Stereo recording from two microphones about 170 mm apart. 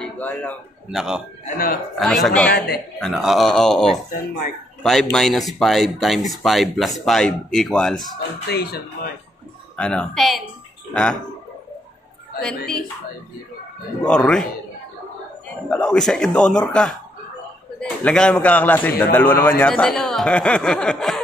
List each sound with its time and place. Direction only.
0.0 s a man's voice: 10° left (ahead or behind)
0.8 s speech: 5° right (ahead or behind)
1.4 s speech: 55° left (ahead or behind)
2.0 s speech: centre (ahead or behind)
5.1 s speech: centre (ahead or behind)
8.5 s speech: 70° left (ahead or behind)
9.8 s speech: 5° left (ahead or behind)
12.4 s speech: 5° left (ahead or behind)
14.0 s speech: 5° left (ahead or behind)
15.7 s speech: 5° left (ahead or behind)